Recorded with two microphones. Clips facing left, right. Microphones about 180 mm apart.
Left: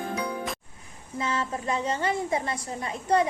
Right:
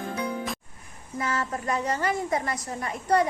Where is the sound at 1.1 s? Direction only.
25° left (ahead or behind).